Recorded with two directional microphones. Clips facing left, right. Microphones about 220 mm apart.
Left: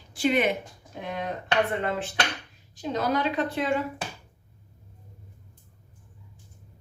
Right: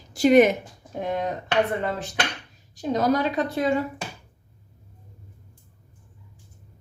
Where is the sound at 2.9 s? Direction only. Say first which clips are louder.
Right 4 dB; 40° right (ahead or behind).